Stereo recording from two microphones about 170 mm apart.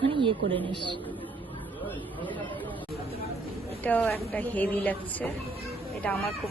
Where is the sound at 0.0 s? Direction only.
30° right (ahead or behind).